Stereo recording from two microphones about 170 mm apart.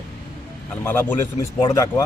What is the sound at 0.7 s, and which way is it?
A man's voice, 10° left (ahead or behind).